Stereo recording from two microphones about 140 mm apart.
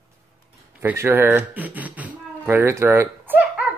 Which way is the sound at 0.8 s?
15° right (ahead or behind).